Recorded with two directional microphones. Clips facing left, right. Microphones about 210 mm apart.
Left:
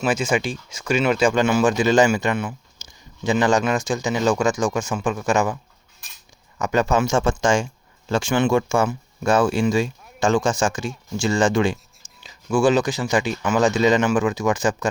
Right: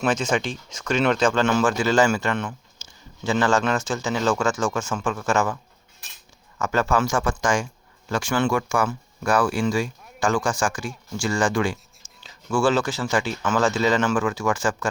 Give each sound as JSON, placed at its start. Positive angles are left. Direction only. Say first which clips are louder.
{"t": 0.0, "sound": "speech", "louder": "left 1 dB", "side_deg": 10}
{"t": 6.6, "sound": "speech", "louder": "left 2 dB", "side_deg": 20}